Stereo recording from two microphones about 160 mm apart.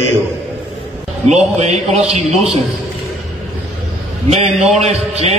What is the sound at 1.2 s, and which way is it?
Speech, 45° right (ahead or behind).